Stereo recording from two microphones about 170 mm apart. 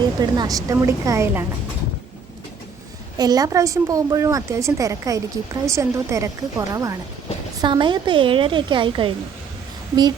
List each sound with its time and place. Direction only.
0.0 s a woman's voice: 25° right (ahead or behind)
3.2 s a woman's voice: 20° right (ahead or behind)